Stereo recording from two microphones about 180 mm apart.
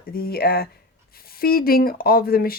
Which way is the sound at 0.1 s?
55° left (ahead or behind).